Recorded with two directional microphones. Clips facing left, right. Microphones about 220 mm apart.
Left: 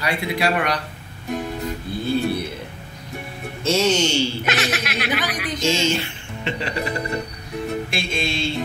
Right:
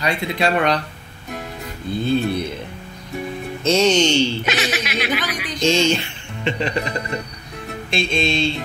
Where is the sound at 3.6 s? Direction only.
20° right (ahead or behind).